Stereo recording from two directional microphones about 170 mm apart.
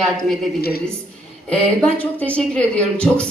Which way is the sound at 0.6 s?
65° left (ahead or behind).